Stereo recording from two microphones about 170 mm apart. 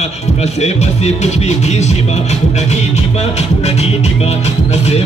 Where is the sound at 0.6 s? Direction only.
40° left (ahead or behind).